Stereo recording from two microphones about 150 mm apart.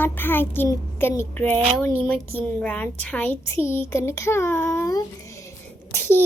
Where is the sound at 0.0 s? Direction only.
15° left (ahead or behind).